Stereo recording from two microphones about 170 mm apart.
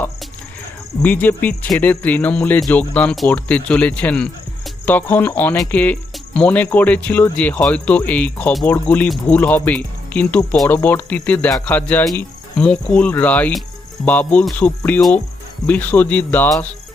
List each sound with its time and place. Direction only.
1.0 s speech: 10° left (ahead or behind)